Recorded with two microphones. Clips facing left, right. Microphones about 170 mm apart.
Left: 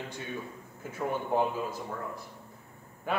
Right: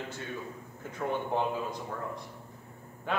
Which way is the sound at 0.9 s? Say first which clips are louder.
Left 2 dB; 5° left (ahead or behind).